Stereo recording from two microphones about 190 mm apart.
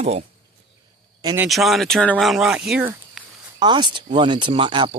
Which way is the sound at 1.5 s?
Centre (ahead or behind).